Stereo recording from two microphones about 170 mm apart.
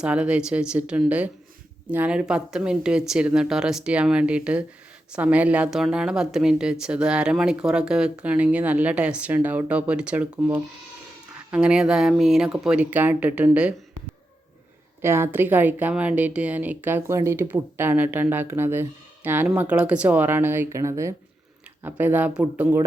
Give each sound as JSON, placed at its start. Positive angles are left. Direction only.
{"t": 0.0, "sound": "speech", "side_deg": -5}
{"t": 15.0, "sound": "speech", "side_deg": -15}